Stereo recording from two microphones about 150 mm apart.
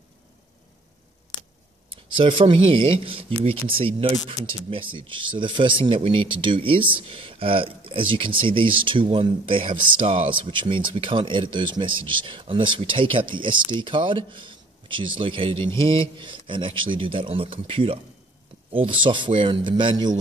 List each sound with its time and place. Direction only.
1.9 s speech: 35° right (ahead or behind)